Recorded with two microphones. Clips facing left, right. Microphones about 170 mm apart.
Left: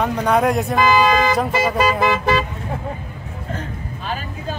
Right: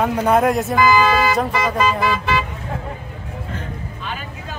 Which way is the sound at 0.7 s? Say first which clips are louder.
Even; 20° left (ahead or behind).